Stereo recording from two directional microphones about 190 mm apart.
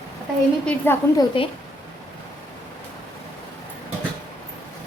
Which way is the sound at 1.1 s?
20° left (ahead or behind).